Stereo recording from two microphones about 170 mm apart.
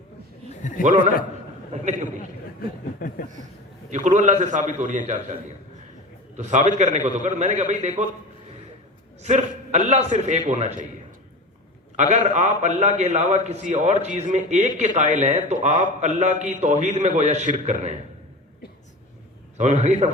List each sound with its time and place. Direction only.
1.7 s a man's voice: 45° right (ahead or behind)
2.6 s speech: 55° left (ahead or behind)
3.8 s a man's voice: 45° right (ahead or behind)
6.3 s a man's voice: 45° right (ahead or behind)
9.2 s a man's voice: 45° right (ahead or behind)
11.9 s a man's voice: 45° right (ahead or behind)
19.5 s a man's voice: 45° right (ahead or behind)